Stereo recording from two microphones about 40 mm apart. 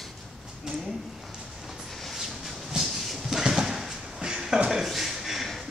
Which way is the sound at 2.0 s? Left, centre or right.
Centre.